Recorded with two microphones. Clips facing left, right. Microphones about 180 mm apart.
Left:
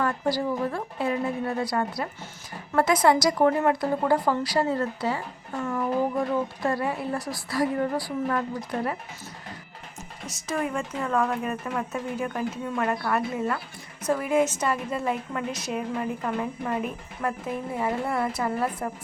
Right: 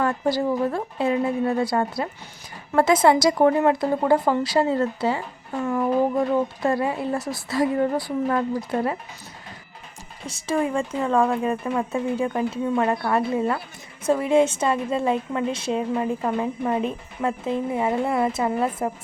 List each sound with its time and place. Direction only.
0.0 s a woman's voice: 25° right (ahead or behind)
6.7 s a woman's voice: 25° right (ahead or behind)
10.2 s a woman's voice: 30° right (ahead or behind)